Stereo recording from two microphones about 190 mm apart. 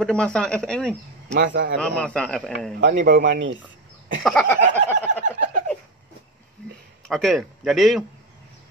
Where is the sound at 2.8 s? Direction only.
50° right (ahead or behind).